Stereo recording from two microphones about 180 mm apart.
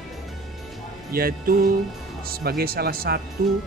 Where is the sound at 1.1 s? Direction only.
55° right (ahead or behind).